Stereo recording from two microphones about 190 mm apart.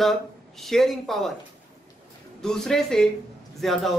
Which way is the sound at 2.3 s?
5° left (ahead or behind).